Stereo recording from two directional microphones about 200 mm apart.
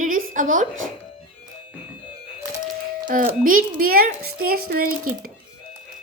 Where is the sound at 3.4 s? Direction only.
45° right (ahead or behind).